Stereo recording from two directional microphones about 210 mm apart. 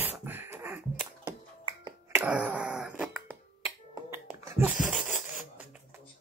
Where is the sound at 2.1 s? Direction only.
5° right (ahead or behind).